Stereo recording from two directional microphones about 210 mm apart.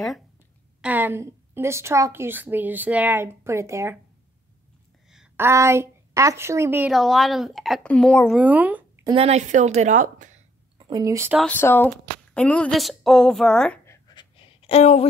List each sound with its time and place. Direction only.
0.7 s a woman's voice: 10° right (ahead or behind)
5.1 s a woman's voice: 5° right (ahead or behind)
8.4 s speech: 5° right (ahead or behind)
9.1 s a woman's voice: 30° right (ahead or behind)
10.8 s speech: 20° right (ahead or behind)
11.3 s a woman's voice: 5° left (ahead or behind)
14.0 s a sound: 25° left (ahead or behind)